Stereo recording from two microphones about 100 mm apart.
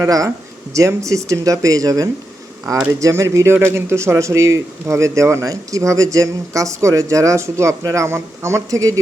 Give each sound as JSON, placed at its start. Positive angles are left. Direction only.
{"t": 0.0, "sound": "speech", "side_deg": -35}